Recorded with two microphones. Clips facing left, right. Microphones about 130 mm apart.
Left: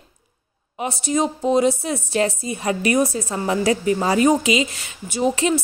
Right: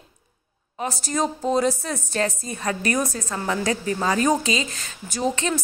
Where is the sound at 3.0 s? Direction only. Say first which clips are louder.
Left 6 dB; 30° left (ahead or behind).